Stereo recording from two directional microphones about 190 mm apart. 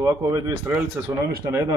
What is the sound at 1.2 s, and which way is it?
Speech, 55° right (ahead or behind).